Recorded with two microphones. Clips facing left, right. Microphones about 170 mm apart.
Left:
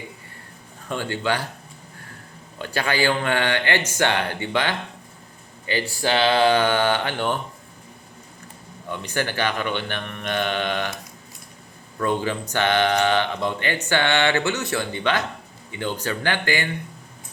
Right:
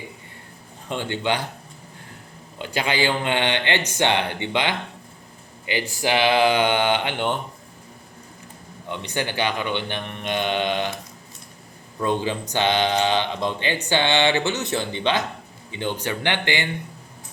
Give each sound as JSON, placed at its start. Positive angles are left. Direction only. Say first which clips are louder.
{"t": 0.9, "sound": "a man's voice", "louder": "even", "side_deg": -20}
{"t": 2.6, "sound": "a man's voice", "louder": "even", "side_deg": -20}
{"t": 6.0, "sound": "speech", "louder": "even", "side_deg": -15}
{"t": 8.9, "sound": "speech", "louder": "left 1 dB", "side_deg": -20}
{"t": 11.9, "sound": "a man's voice", "louder": "even", "side_deg": -20}